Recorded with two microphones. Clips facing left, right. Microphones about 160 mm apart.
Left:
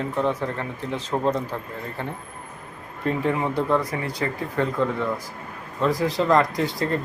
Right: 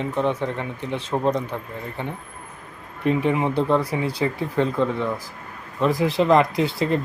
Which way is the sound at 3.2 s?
20° right (ahead or behind).